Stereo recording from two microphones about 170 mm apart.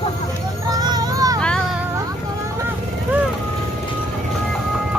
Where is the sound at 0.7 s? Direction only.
25° right (ahead or behind).